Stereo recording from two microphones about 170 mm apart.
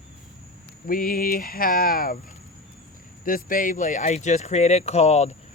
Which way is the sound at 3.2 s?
55° left (ahead or behind).